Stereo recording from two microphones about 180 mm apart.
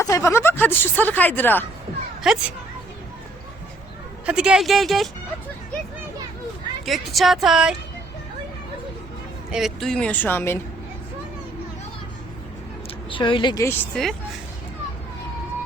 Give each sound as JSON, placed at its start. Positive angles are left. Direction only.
{"t": 0.0, "sound": "speech", "side_deg": 15}
{"t": 2.3, "sound": "speech", "side_deg": 0}
{"t": 4.3, "sound": "speech", "side_deg": -5}
{"t": 6.8, "sound": "speech", "side_deg": 0}
{"t": 9.5, "sound": "speech", "side_deg": 0}
{"t": 13.1, "sound": "speech", "side_deg": 30}
{"t": 13.7, "sound": "speech", "side_deg": 5}